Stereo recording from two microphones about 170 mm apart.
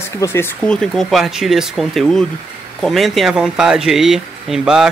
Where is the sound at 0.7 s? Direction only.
Centre (ahead or behind).